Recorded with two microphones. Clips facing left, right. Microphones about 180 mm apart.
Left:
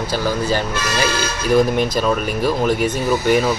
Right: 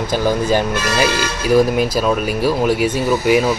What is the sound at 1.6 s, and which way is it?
Speech, 5° right (ahead or behind).